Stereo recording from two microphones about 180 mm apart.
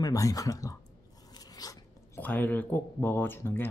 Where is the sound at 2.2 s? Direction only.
10° left (ahead or behind).